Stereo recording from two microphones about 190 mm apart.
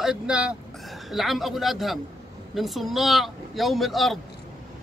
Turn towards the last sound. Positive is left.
turn(degrees=0)  # may be behind; listen again after turning